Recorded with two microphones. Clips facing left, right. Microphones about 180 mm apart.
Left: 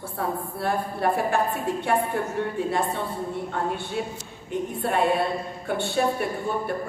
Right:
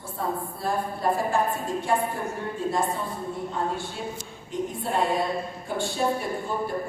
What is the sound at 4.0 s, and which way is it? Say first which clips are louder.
A woman's voice: left 3 dB; 65° left (ahead or behind).